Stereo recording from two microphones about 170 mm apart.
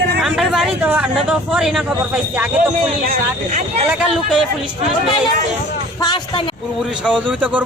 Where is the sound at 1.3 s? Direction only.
5° right (ahead or behind).